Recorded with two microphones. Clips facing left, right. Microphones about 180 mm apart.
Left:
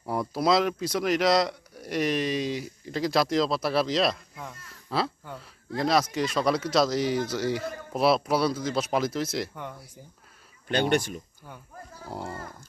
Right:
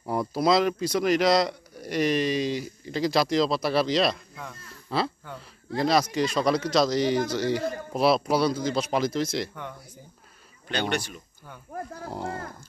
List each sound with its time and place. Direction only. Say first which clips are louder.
0.0 s speech: right 2 dB; centre (ahead or behind)
10.7 s speech: left 4 dB; 50° left (ahead or behind)
12.1 s speech: right 1 dB; 5° left (ahead or behind)